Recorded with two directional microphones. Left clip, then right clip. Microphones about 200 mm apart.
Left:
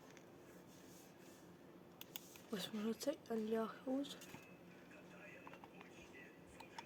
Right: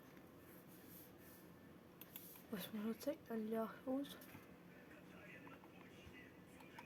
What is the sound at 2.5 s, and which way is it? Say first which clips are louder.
Speech: left 3 dB; 15° left (ahead or behind).